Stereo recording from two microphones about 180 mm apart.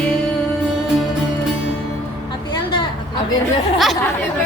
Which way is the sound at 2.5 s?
25° left (ahead or behind).